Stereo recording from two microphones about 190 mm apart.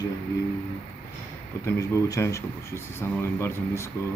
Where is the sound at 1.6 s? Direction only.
15° left (ahead or behind).